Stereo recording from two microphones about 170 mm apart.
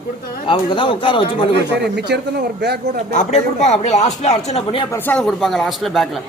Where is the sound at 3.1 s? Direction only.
45° left (ahead or behind).